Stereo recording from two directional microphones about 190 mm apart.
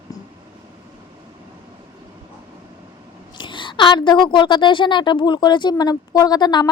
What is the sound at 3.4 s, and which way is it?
A woman's voice, 25° left (ahead or behind).